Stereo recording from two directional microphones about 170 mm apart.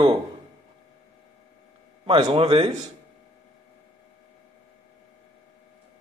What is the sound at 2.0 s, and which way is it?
Speech, 30° right (ahead or behind).